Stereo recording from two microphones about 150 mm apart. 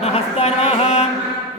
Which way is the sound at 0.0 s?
45° left (ahead or behind).